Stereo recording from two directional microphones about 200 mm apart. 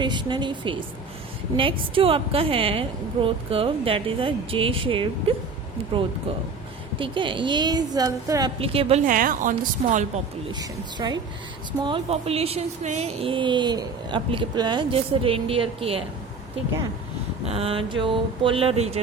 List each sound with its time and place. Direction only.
0.0 s speech: 25° right (ahead or behind)
7.0 s speech: 25° right (ahead or behind)
9.0 s a woman's voice: 45° right (ahead or behind)
10.5 s speech: 20° right (ahead or behind)
17.4 s speech: 30° right (ahead or behind)